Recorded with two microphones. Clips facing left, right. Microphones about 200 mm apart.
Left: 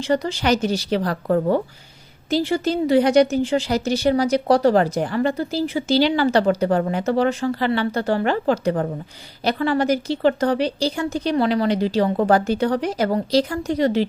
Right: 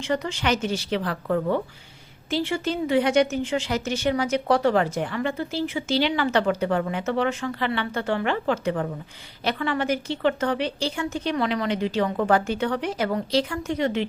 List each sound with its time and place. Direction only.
0.0 s a woman's voice: 35° left (ahead or behind)